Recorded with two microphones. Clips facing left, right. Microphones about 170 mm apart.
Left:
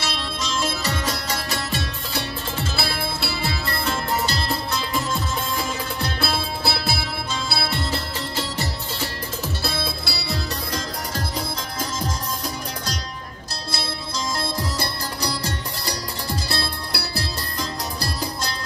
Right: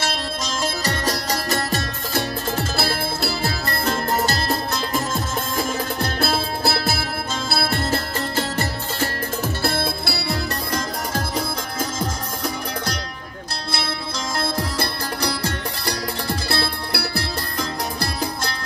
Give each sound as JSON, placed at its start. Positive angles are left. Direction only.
{"t": 0.0, "sound": "music", "side_deg": -45}
{"t": 13.7, "sound": "music", "side_deg": -60}